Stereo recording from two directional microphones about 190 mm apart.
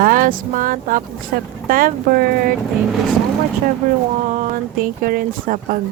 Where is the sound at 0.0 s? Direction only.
45° right (ahead or behind).